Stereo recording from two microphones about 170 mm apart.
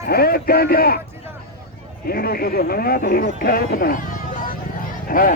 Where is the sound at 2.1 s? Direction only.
60° left (ahead or behind).